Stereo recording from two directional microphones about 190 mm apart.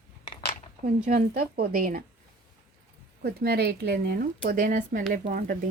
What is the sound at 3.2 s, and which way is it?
Speech, 55° right (ahead or behind).